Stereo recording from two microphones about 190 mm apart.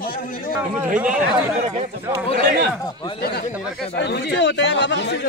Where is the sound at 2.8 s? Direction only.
20° left (ahead or behind).